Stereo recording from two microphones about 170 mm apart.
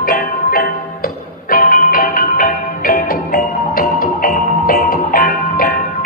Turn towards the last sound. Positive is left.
turn(degrees=55)  # may be behind; listen again after turning